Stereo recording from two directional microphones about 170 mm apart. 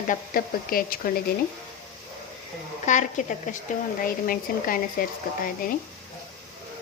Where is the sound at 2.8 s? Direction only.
45° left (ahead or behind).